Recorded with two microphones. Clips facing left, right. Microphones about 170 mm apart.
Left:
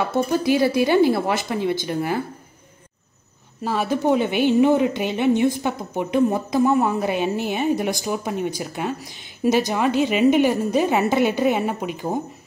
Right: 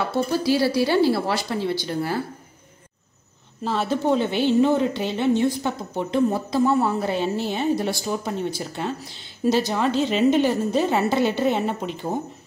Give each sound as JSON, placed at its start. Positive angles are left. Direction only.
{"t": 0.1, "sound": "a woman's voice", "side_deg": 15}
{"t": 3.6, "sound": "a woman's voice", "side_deg": 15}